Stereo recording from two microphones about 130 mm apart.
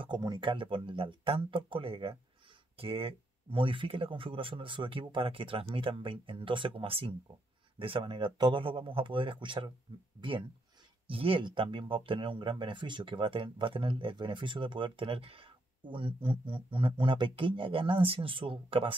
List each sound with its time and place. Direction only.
0.0 s speech: 35° right (ahead or behind)
11.1 s speech: 45° right (ahead or behind)